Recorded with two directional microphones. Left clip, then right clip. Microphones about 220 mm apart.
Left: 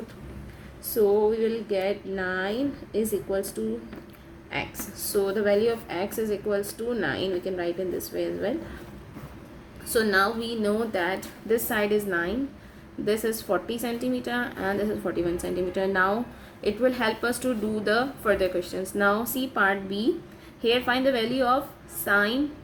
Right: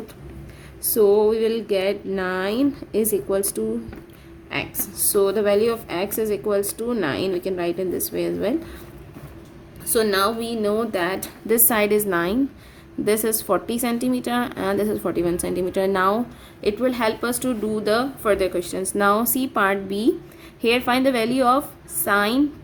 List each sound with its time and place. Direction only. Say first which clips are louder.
0.9 s a sound: right 5 dB; 35° right (ahead or behind)
4.5 s a woman's voice: right 4 dB; 30° right (ahead or behind)
9.9 s a woman's voice: right 3 dB; 25° right (ahead or behind)